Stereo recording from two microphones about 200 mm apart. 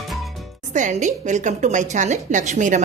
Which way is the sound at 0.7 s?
40° right (ahead or behind).